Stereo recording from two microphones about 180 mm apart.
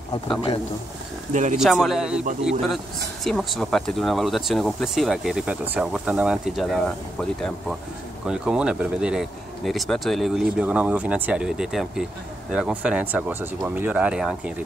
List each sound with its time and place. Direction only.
1.3 s speech: 45° right (ahead or behind)
1.6 s speech: centre (ahead or behind)
3.3 s speech: centre (ahead or behind)